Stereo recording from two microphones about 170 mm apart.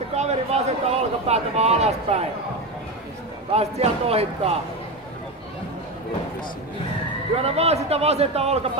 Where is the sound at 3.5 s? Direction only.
40° right (ahead or behind).